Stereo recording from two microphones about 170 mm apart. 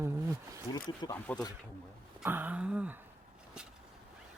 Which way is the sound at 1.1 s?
10° left (ahead or behind).